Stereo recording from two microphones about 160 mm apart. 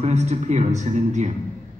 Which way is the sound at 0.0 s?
45° right (ahead or behind).